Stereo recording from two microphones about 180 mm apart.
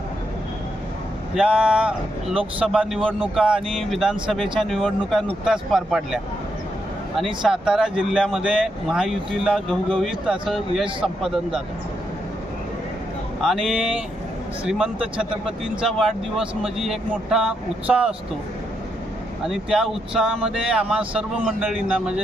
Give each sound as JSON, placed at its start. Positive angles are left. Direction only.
{"t": 1.4, "sound": "speech", "side_deg": -5}
{"t": 7.2, "sound": "speech", "side_deg": -5}
{"t": 13.4, "sound": "speech", "side_deg": 0}
{"t": 19.5, "sound": "speech", "side_deg": 0}